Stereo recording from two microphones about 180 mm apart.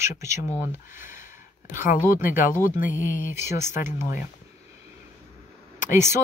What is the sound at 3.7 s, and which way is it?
Speech, 45° left (ahead or behind).